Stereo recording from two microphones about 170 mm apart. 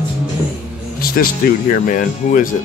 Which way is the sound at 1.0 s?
55° left (ahead or behind).